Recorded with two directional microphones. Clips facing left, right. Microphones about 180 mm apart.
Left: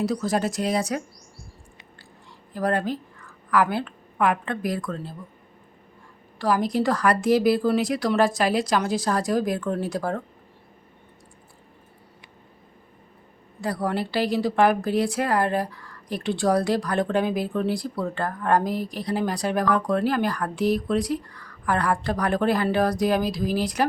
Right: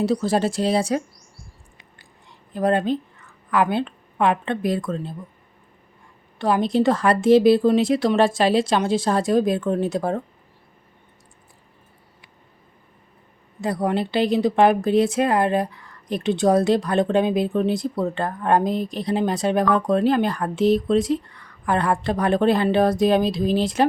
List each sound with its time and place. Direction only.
0.0 s a woman's voice: 30° right (ahead or behind)
2.5 s a woman's voice: 20° right (ahead or behind)
6.4 s a woman's voice: 25° right (ahead or behind)
13.6 s a woman's voice: 20° right (ahead or behind)